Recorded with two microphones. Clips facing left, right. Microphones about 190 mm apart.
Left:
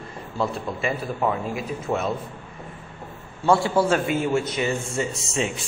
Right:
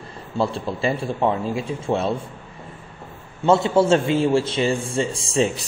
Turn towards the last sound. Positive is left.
turn(degrees=-35)  # may be behind; listen again after turning